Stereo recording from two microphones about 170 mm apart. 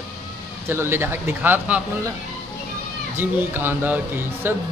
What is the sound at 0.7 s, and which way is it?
Speech, 15° right (ahead or behind).